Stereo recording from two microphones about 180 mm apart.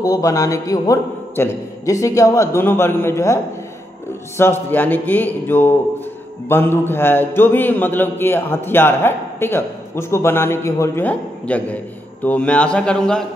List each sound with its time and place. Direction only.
0.0 s speech: 20° left (ahead or behind)
4.4 s speech: 10° left (ahead or behind)